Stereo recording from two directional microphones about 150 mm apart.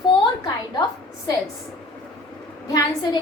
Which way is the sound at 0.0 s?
30° left (ahead or behind).